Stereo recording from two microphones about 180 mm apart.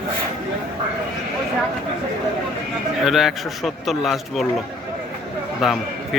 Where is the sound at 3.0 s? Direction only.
Centre (ahead or behind).